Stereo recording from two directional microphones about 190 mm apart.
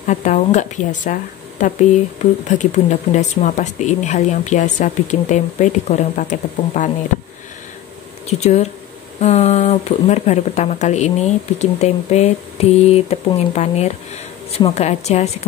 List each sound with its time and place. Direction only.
0.0 s speech: 40° left (ahead or behind)
2.4 s speech: 40° left (ahead or behind)
8.3 s speech: 35° left (ahead or behind)